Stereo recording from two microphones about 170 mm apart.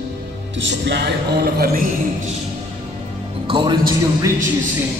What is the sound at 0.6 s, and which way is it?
Speech, 90° right.